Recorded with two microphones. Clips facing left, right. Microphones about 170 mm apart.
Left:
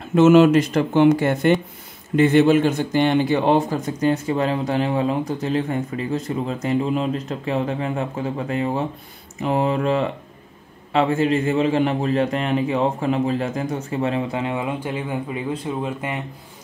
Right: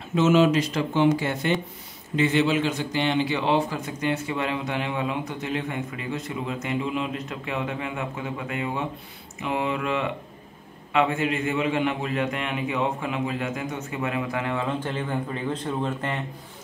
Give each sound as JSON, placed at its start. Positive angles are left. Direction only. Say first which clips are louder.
{"t": 0.1, "sound": "a man's voice", "louder": "left 7 dB", "side_deg": 55}